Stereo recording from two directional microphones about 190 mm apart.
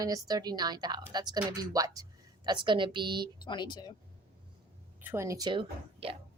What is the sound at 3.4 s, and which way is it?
Speech, 25° left (ahead or behind).